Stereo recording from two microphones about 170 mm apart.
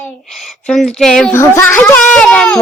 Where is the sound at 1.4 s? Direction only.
15° left (ahead or behind).